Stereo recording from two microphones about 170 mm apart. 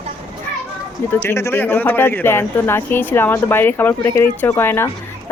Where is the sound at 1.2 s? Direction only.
15° left (ahead or behind).